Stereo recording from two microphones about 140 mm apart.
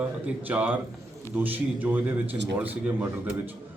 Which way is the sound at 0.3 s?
10° right (ahead or behind).